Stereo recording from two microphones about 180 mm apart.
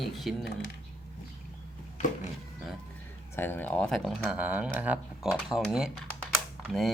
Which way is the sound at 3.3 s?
10° left (ahead or behind).